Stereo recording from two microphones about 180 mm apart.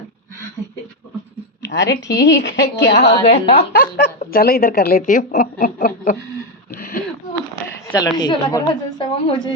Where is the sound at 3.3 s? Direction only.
35° left (ahead or behind).